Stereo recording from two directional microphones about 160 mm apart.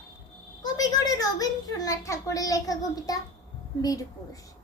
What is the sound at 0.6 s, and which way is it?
A child's voice, 25° left (ahead or behind).